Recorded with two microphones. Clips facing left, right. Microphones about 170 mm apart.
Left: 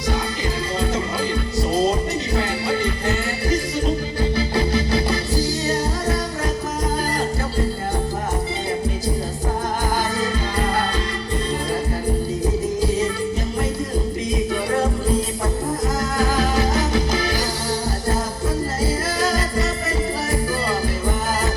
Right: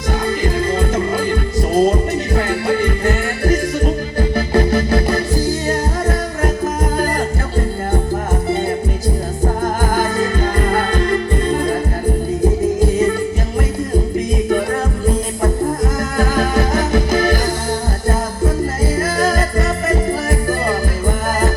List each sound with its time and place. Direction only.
0.4 s music: 50° right (ahead or behind)
9.9 s music: 50° right (ahead or behind)
12.8 s music: 50° right (ahead or behind)
16.1 s music: 50° right (ahead or behind)
19.2 s music: 50° right (ahead or behind)